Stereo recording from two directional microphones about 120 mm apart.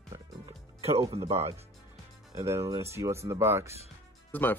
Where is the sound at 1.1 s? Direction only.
60° right (ahead or behind).